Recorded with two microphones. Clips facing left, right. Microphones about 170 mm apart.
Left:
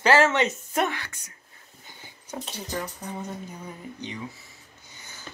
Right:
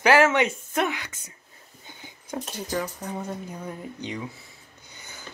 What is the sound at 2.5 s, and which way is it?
Speech, 5° right (ahead or behind).